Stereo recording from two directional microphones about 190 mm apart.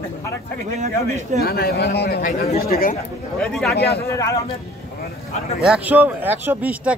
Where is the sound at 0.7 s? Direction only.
40° right (ahead or behind).